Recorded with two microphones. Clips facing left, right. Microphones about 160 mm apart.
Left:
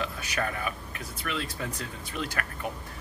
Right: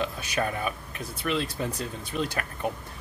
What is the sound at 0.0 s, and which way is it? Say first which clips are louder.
Speech: right 3 dB; 25° right (ahead or behind).